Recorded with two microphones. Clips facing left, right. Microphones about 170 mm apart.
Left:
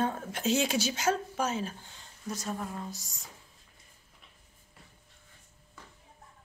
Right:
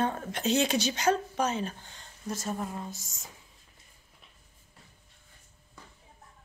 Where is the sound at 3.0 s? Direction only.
20° right (ahead or behind).